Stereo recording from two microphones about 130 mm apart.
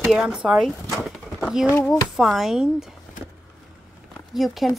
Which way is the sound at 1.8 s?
Centre (ahead or behind).